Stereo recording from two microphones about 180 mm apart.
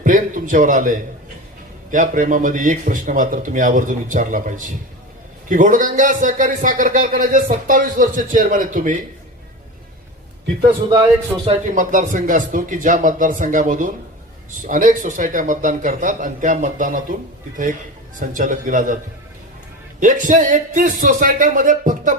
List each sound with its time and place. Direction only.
0.0 s a man's voice: 45° right (ahead or behind)
11.4 s a man's voice: 40° right (ahead or behind)
18.2 s a man's voice: 45° right (ahead or behind)
20.0 s a man's voice: 45° right (ahead or behind)